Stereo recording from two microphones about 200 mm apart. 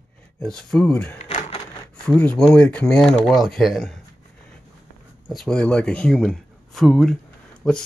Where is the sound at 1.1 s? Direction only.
30° left (ahead or behind).